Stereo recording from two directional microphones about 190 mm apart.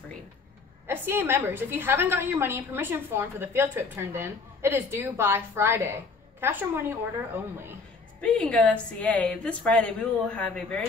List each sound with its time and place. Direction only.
0.8 s a woman's voice: 10° right (ahead or behind)
8.2 s a woman's voice: 5° left (ahead or behind)